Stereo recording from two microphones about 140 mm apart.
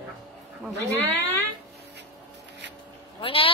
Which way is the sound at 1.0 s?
15° left (ahead or behind).